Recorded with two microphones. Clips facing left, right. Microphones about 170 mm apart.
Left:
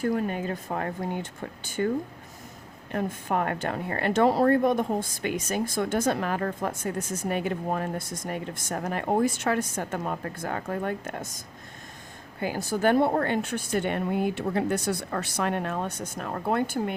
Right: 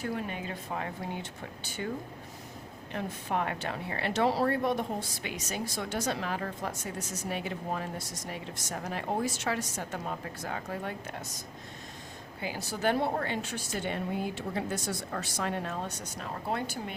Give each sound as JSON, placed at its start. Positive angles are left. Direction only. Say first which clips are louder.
{"t": 0.0, "sound": "a woman's voice", "louder": "left 8 dB", "side_deg": 45}
{"t": 2.9, "sound": "a woman's voice", "louder": "left 5 dB", "side_deg": 45}